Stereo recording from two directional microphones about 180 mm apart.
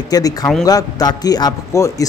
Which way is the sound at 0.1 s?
20° left (ahead or behind).